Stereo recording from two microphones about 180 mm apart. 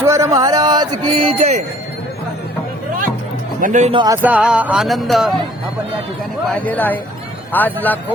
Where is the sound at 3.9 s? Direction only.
25° right (ahead or behind).